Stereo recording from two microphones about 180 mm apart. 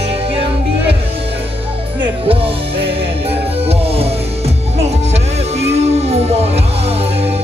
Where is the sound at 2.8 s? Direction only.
35° right (ahead or behind).